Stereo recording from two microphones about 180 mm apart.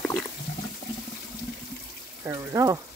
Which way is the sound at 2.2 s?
15° right (ahead or behind).